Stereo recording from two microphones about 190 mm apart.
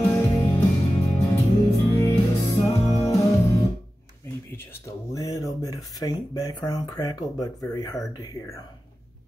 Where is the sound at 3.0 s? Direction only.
15° left (ahead or behind).